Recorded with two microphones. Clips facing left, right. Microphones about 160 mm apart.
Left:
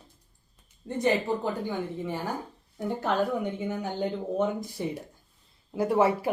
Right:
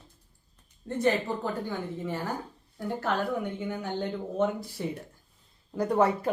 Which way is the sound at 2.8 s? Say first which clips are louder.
Left 3 dB; 20° left (ahead or behind).